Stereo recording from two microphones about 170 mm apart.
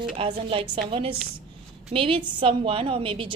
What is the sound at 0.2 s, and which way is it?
A woman's voice, 30° right (ahead or behind).